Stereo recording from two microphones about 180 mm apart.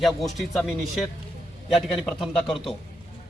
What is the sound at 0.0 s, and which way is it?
A man's voice, centre (ahead or behind).